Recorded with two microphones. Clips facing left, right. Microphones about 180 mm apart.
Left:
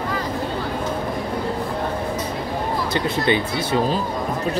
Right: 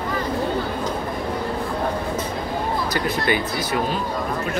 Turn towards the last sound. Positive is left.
turn(degrees=25)  # may be behind; listen again after turning